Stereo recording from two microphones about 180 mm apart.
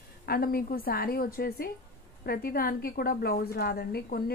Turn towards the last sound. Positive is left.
turn(degrees=60)  # may be behind; listen again after turning